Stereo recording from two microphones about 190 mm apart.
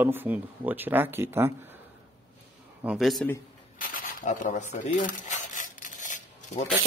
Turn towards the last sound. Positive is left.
turn(degrees=40)  # may be behind; listen again after turning